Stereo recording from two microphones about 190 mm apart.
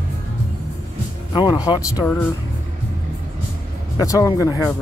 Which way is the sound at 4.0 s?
15° left (ahead or behind).